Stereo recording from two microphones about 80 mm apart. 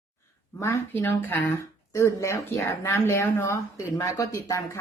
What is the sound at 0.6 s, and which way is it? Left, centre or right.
A woman's voice, left.